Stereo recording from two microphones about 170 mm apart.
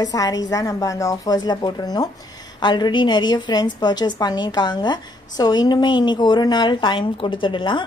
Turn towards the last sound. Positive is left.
turn(degrees=30)  # may be behind; listen again after turning